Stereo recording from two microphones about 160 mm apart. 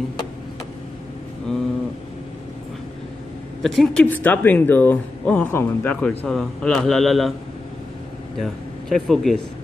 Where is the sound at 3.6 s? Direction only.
Centre (ahead or behind).